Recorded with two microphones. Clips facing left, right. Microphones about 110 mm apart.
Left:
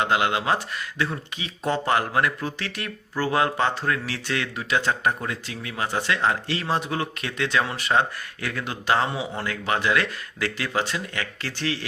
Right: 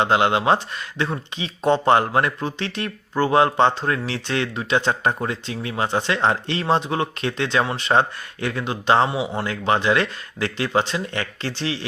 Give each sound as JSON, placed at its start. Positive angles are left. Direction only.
{"t": 0.0, "sound": "speech", "side_deg": -30}